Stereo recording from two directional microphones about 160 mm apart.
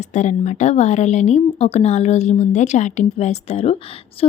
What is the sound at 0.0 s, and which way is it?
A woman's voice, 45° left (ahead or behind).